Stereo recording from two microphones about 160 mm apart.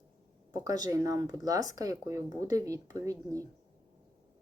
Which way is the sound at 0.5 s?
25° right (ahead or behind).